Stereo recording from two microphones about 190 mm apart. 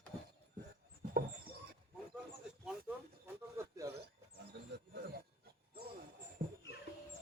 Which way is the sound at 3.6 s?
15° right (ahead or behind).